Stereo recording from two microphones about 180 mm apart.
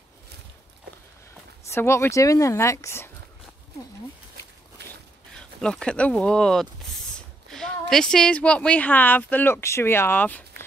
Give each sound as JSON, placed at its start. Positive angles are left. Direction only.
{"t": 1.7, "sound": "speech", "side_deg": 15}
{"t": 5.3, "sound": "speech", "side_deg": 5}
{"t": 7.4, "sound": "a sound", "side_deg": 0}
{"t": 7.9, "sound": "speech", "side_deg": 5}